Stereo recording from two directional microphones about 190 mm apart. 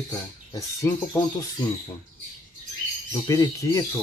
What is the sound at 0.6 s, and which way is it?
Speech, 10° left (ahead or behind).